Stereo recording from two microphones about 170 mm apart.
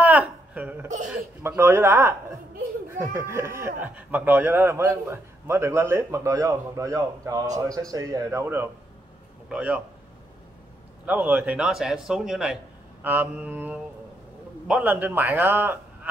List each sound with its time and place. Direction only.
0.0 s a sound: 10° right (ahead or behind)
1.4 s a man's voice: 15° right (ahead or behind)
11.1 s a man's voice: 10° right (ahead or behind)